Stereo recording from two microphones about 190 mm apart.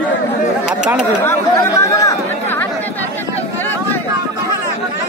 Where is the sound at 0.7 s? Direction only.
5° right (ahead or behind).